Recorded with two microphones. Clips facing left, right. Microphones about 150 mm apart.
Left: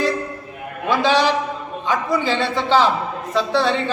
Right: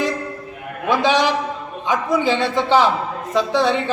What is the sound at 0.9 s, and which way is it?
A man's voice, 15° right (ahead or behind).